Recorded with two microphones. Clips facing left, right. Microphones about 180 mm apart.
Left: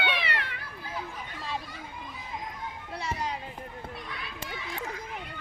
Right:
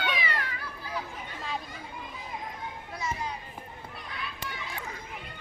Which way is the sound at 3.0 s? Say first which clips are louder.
Left 1 dB; 90° left.